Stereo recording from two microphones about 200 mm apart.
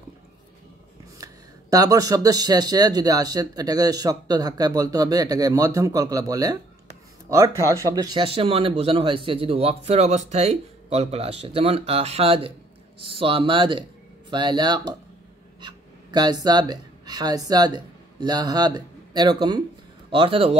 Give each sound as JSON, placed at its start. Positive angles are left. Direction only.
{"t": 1.1, "sound": "speech", "side_deg": -20}
{"t": 15.6, "sound": "a sound", "side_deg": -20}
{"t": 16.4, "sound": "speech", "side_deg": -20}